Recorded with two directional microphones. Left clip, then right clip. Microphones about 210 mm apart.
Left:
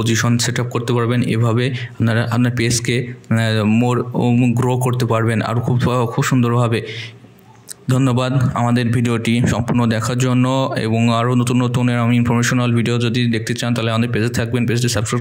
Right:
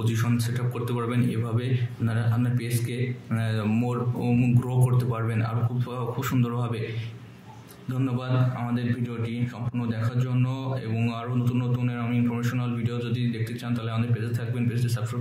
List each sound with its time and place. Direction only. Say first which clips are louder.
0.0 s a man's voice: left 12 dB; 40° left (ahead or behind)
7.9 s a man's voice: left 12 dB; 50° left (ahead or behind)